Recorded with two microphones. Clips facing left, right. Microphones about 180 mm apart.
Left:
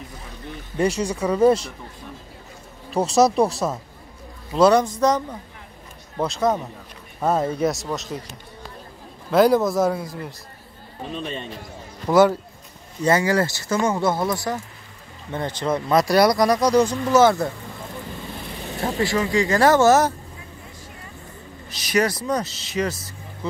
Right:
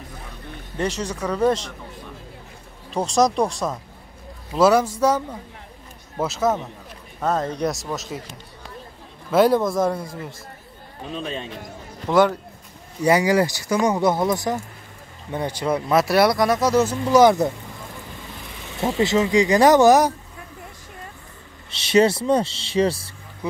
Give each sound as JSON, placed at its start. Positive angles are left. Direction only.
{"t": 0.7, "sound": "speech", "side_deg": 10}
{"t": 2.9, "sound": "speech", "side_deg": 5}
{"t": 7.2, "sound": "speech", "side_deg": 10}
{"t": 9.3, "sound": "speech", "side_deg": 0}
{"t": 13.0, "sound": "speech", "side_deg": -15}
{"t": 18.9, "sound": "speech", "side_deg": -20}
{"t": 21.6, "sound": "speech", "side_deg": -25}